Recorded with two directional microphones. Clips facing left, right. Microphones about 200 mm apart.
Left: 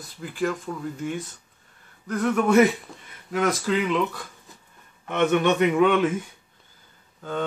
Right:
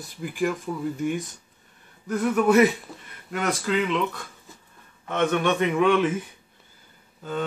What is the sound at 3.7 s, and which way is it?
Speech, 5° left (ahead or behind).